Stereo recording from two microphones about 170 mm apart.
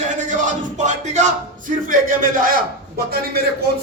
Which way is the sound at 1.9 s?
55° right (ahead or behind).